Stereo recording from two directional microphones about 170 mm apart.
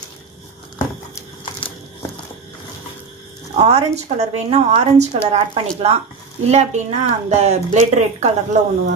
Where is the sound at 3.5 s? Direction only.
40° right (ahead or behind).